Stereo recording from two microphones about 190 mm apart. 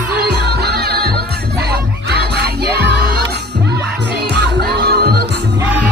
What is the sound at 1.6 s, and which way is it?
Battle cry, 55° right (ahead or behind).